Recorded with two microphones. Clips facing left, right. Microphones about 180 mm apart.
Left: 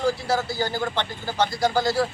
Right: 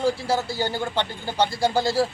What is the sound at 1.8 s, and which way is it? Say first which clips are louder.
Speech: right 1 dB; 25° right (ahead or behind).